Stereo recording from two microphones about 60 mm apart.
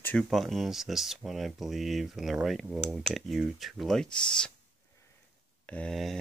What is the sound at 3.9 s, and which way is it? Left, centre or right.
Speech, centre.